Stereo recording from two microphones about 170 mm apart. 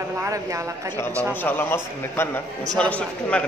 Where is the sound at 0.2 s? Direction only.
20° right (ahead or behind).